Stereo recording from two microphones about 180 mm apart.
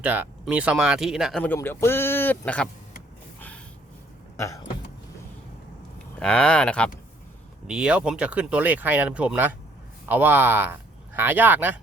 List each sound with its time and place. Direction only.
0.0 s speech: 10° right (ahead or behind)
1.5 s speech: 15° left (ahead or behind)
4.4 s a sound: 15° left (ahead or behind)
6.1 s speech: 5° left (ahead or behind)
7.7 s speech: 5° right (ahead or behind)